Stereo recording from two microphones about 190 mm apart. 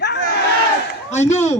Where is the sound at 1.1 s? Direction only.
35° left (ahead or behind).